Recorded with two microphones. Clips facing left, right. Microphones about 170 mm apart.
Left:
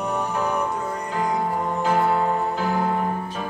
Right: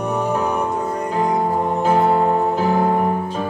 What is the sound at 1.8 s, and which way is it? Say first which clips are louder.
Music: right 4 dB; 25° right (ahead or behind).